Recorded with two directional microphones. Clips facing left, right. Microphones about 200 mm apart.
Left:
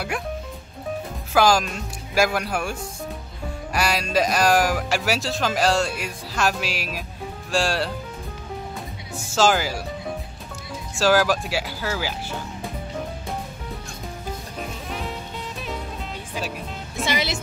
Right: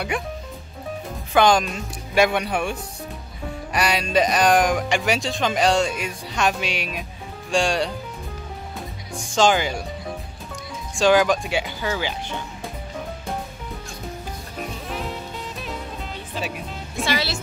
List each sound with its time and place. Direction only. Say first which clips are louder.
0.1 s speech: right 2 dB; centre (ahead or behind)
1.3 s speech: right 1 dB; centre (ahead or behind)
9.1 s speech: right 1 dB; 5° left (ahead or behind)
11.0 s speech: right 2 dB; 5° left (ahead or behind)
14.7 s music: right 2 dB; centre (ahead or behind)
16.3 s music: right 1 dB; centre (ahead or behind)
17.0 s speech: even; 20° left (ahead or behind)